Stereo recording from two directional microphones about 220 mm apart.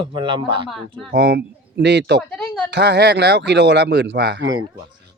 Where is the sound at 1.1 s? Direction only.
50° right (ahead or behind).